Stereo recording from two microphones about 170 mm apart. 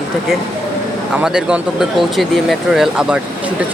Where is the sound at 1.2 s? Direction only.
5° right (ahead or behind).